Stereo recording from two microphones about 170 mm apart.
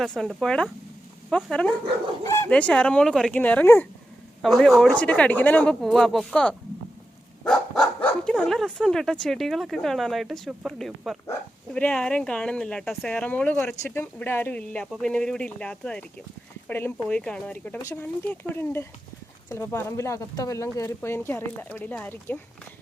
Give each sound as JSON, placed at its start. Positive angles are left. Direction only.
{"t": 0.0, "sound": "speech", "side_deg": 0}
{"t": 2.2, "sound": "speech", "side_deg": 15}
{"t": 4.4, "sound": "speech", "side_deg": 0}